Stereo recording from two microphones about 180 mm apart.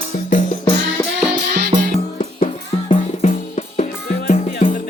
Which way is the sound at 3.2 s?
40° left (ahead or behind).